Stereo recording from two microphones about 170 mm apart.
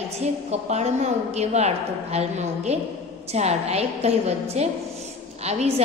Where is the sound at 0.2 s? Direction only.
40° right (ahead or behind).